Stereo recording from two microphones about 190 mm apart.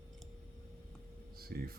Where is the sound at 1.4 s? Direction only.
50° right (ahead or behind).